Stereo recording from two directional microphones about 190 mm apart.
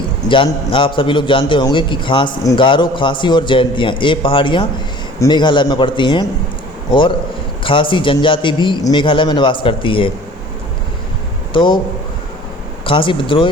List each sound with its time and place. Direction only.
0.3 s a man's voice: 25° left (ahead or behind)
7.6 s a man's voice: 25° left (ahead or behind)
11.5 s a man's voice: 25° left (ahead or behind)
12.8 s a man's voice: 25° left (ahead or behind)